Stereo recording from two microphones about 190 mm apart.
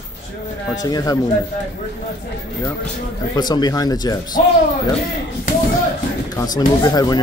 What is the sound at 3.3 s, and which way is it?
Speech, 20° left (ahead or behind).